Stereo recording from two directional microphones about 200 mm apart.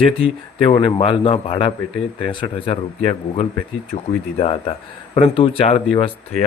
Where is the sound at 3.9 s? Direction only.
30° left (ahead or behind).